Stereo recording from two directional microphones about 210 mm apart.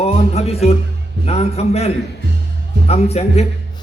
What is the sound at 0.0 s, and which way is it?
A man's voice, 30° left (ahead or behind).